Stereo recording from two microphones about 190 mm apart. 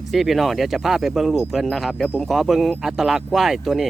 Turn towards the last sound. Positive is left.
turn(degrees=0)  # may be behind; listen again after turning